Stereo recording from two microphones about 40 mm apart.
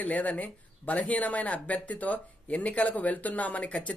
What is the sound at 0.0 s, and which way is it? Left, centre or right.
Speech, left.